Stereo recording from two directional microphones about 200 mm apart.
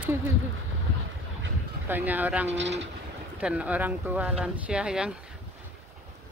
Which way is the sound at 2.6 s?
60° right (ahead or behind).